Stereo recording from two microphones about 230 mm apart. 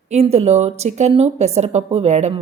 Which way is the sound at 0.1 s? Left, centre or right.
Right.